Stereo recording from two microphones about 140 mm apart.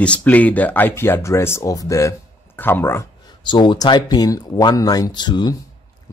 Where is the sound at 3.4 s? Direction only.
30° left (ahead or behind).